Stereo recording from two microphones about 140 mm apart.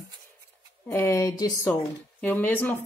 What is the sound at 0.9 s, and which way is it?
Speech, 20° left (ahead or behind).